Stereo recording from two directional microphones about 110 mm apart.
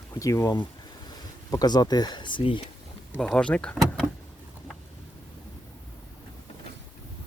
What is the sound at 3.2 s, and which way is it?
Speech, 5° left (ahead or behind).